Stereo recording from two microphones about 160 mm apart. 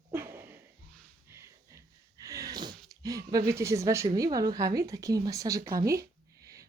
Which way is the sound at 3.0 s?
20° right (ahead or behind).